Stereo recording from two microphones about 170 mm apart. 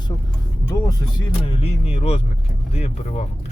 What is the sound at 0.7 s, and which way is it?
Vehicle, 20° left (ahead or behind).